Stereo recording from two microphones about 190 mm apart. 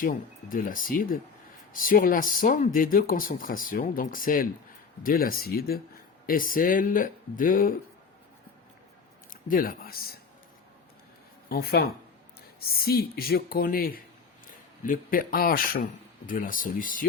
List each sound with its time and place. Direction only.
0.0 s speech: 45° left (ahead or behind)
9.3 s speech: 50° left (ahead or behind)
11.4 s speech: 55° left (ahead or behind)